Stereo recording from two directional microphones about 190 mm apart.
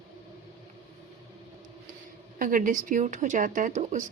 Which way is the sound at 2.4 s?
45° right (ahead or behind).